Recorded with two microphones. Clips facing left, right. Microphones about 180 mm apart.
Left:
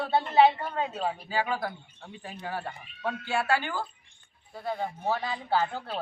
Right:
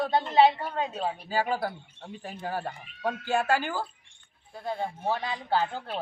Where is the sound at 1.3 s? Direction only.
40° right (ahead or behind).